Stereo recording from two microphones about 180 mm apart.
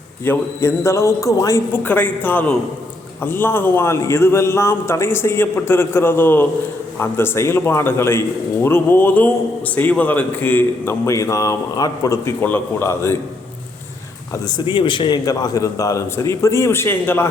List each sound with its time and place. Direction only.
0.3 s a man's voice: 15° left (ahead or behind)
14.4 s a man's voice: 25° left (ahead or behind)